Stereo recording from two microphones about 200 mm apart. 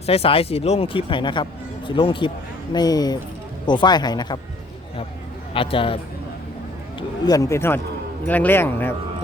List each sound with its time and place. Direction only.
0.0 s speech: 30° left (ahead or behind)
5.5 s speech: 25° left (ahead or behind)
7.3 s speech: 15° left (ahead or behind)